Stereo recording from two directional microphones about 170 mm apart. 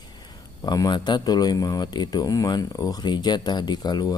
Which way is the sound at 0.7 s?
25° left (ahead or behind).